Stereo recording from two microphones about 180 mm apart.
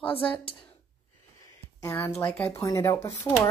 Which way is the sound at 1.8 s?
15° left (ahead or behind).